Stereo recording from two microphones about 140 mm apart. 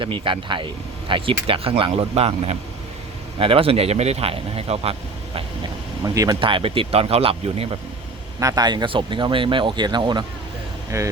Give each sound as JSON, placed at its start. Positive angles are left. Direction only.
{"t": 0.0, "sound": "speech", "side_deg": -35}
{"t": 6.0, "sound": "speech", "side_deg": -25}
{"t": 6.4, "sound": "speech", "side_deg": -40}
{"t": 8.4, "sound": "speech", "side_deg": -25}
{"t": 10.9, "sound": "speech", "side_deg": -20}